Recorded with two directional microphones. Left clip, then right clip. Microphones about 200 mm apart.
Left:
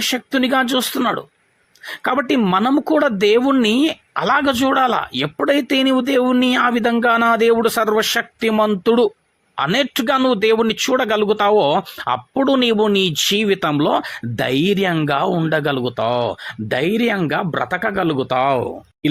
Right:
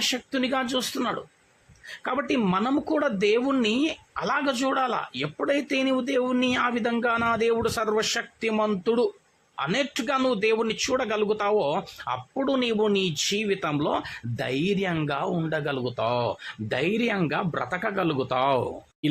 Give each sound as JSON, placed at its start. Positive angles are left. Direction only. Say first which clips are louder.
{"t": 0.0, "sound": "a man's voice", "louder": "left 7 dB", "side_deg": 35}